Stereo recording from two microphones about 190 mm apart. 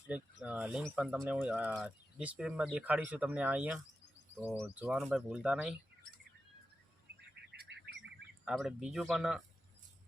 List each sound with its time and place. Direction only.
0.1 s speech: 5° right (ahead or behind)
7.5 s chirp: 55° right (ahead or behind)
8.4 s speech: centre (ahead or behind)